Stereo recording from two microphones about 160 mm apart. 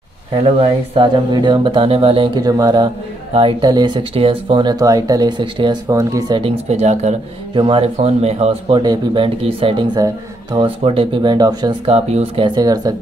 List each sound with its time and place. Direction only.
0.3 s speech: 35° right (ahead or behind)
6.7 s speech: 45° right (ahead or behind)
7.5 s speech: 30° right (ahead or behind)
8.7 s speech: 25° right (ahead or behind)
11.3 s speech: 25° right (ahead or behind)
11.8 s speech: 40° right (ahead or behind); by 12.9 s 25° right (ahead or behind)